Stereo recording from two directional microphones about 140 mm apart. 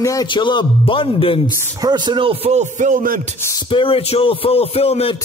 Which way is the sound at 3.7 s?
40° left (ahead or behind).